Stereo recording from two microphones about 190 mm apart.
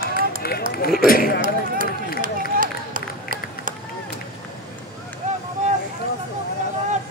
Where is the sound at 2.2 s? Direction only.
45° right (ahead or behind).